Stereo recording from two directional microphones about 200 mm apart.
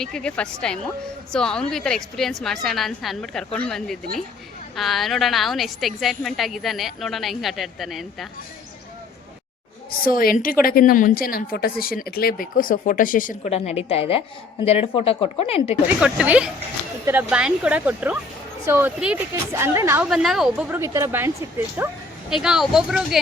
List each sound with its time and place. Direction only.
0.0 s a woman's voice: 5° left (ahead or behind)
10.0 s a woman's voice: 45° left (ahead or behind); by 15.8 s 30° left (ahead or behind)
16.0 s a woman's voice: 5° right (ahead or behind)
20.1 s a woman's voice: centre (ahead or behind)